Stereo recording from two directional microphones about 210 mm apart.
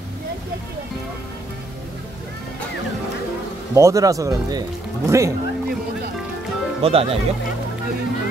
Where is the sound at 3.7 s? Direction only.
15° right (ahead or behind).